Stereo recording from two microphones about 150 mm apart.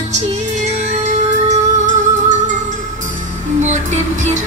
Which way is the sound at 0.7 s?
50° right (ahead or behind).